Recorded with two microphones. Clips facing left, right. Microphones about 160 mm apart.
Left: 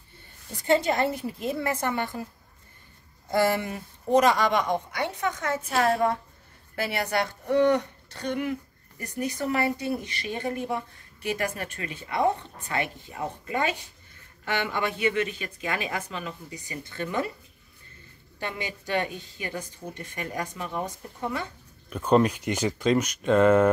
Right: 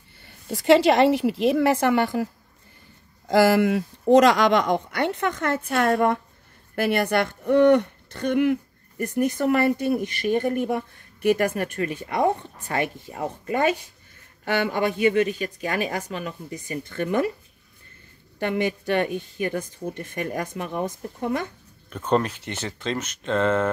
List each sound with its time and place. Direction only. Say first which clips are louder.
0.2 s a woman's voice: right 11 dB; 90° right
3.3 s a woman's voice: right 7 dB; 90° right; by 17.2 s 55° right (ahead or behind)
18.4 s a woman's voice: right 10 dB; 55° right (ahead or behind)
21.8 s speech: left 2 dB; 10° left (ahead or behind)